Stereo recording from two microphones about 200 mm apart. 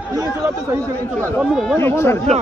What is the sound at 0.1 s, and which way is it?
Speech, 20° right (ahead or behind).